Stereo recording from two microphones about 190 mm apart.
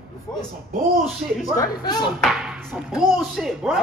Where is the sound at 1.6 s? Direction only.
20° left (ahead or behind).